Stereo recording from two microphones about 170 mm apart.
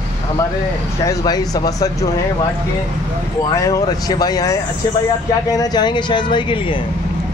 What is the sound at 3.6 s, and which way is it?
A man's voice, 20° left (ahead or behind).